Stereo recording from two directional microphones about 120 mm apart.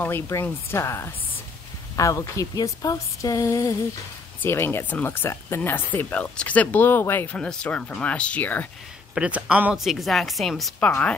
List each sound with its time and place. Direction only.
0.0 s speech: 20° left (ahead or behind)
9.1 s speech: 10° right (ahead or behind)
9.8 s a woman's voice: centre (ahead or behind)
10.9 s speech: 15° left (ahead or behind)